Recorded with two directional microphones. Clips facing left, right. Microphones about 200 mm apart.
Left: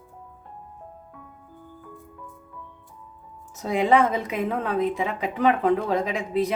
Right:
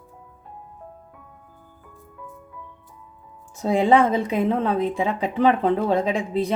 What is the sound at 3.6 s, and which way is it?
Speech, 30° right (ahead or behind).